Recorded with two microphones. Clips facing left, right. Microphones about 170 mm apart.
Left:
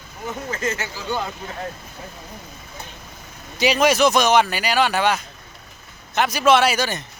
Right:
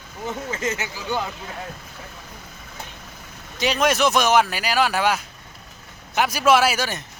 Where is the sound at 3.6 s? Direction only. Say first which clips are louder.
Left 3 dB; centre (ahead or behind).